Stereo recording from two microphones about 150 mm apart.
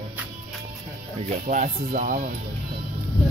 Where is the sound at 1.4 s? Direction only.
55° right (ahead or behind).